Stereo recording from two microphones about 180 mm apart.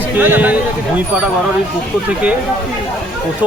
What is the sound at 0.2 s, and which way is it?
Speech, 10° right (ahead or behind).